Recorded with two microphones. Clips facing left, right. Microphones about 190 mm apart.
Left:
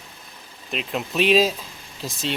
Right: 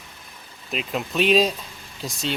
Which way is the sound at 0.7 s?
Centre (ahead or behind).